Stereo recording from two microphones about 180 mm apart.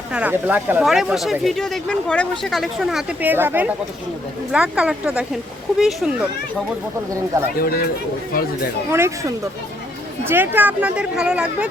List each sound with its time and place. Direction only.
0.1 s speech: 5° right (ahead or behind)
7.6 s speech: 60° left (ahead or behind)
8.9 s speech: 15° right (ahead or behind)